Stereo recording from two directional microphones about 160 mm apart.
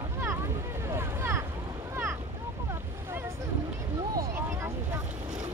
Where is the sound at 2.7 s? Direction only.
15° right (ahead or behind).